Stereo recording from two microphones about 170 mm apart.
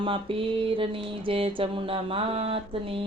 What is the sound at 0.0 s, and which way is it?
Speech, 30° right (ahead or behind).